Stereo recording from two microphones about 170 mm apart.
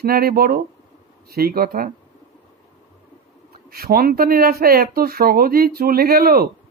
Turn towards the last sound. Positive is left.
turn(degrees=-60)  # may be behind; listen again after turning